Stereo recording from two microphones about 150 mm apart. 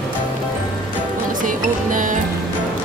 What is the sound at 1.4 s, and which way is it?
Music, 60° right (ahead or behind).